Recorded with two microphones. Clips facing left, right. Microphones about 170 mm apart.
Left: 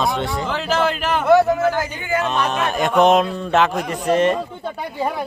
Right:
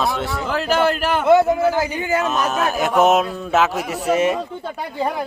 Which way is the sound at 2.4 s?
5° right (ahead or behind).